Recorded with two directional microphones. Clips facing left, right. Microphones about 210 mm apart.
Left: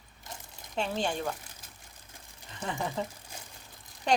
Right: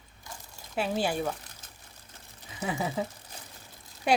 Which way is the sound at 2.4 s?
5° right (ahead or behind).